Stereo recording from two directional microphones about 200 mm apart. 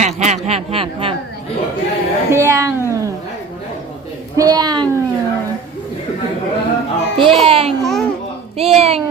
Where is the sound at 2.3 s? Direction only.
15° right (ahead or behind).